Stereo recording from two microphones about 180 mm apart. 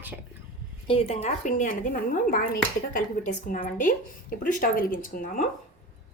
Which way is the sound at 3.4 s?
50° left (ahead or behind).